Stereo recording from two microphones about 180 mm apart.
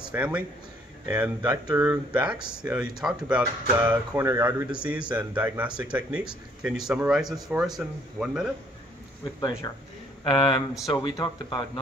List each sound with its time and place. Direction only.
0.1 s speech: 10° right (ahead or behind)
10.2 s speech: 30° left (ahead or behind)